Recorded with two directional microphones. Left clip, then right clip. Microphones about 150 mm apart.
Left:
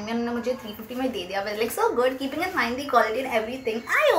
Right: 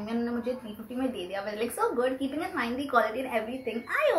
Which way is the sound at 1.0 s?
10° left (ahead or behind).